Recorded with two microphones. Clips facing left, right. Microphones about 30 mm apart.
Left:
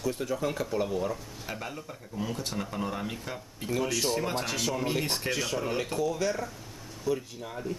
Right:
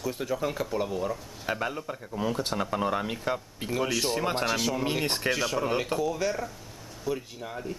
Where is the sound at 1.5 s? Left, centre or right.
Right.